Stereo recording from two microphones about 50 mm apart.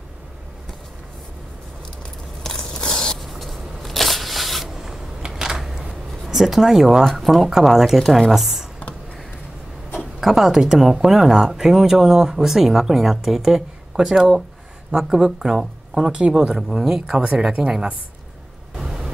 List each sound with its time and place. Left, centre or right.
2.4 s scrape: centre
3.3 s shuffling cards: centre
5.2 s a sound: centre
6.2 s speech: centre
9.9 s speech: centre
16.1 s speech: centre